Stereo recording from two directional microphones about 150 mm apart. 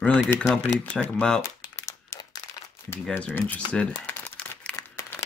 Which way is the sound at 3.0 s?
10° left (ahead or behind).